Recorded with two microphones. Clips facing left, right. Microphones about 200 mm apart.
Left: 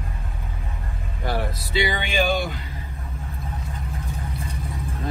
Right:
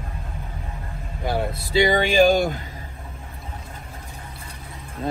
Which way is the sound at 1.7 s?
45° right (ahead or behind).